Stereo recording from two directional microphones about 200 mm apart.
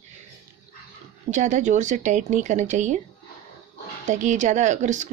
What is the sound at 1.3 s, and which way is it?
Speech, 40° right (ahead or behind).